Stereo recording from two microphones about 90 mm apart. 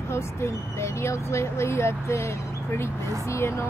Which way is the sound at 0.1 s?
30° left (ahead or behind).